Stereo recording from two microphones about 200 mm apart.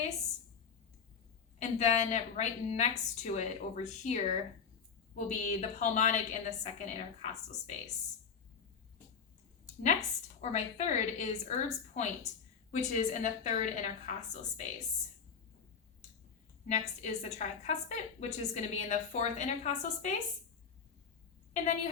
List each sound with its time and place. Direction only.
1.5 s a woman's voice: 35° left (ahead or behind)
10.4 s a woman's voice: 35° left (ahead or behind)
16.6 s a woman's voice: 35° left (ahead or behind)
21.5 s a woman's voice: 35° left (ahead or behind)